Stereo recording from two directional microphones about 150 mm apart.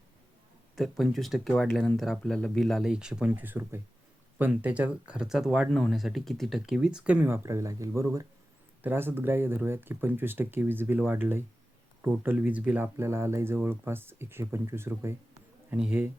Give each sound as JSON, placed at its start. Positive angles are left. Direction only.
{"t": 0.8, "sound": "speech", "side_deg": 0}